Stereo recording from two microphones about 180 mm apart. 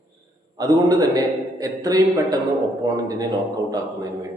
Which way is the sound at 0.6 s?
20° right (ahead or behind).